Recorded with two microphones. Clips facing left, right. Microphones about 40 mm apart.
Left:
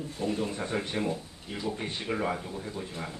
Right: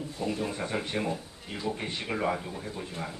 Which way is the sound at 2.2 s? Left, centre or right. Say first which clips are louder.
Right 1 dB; centre.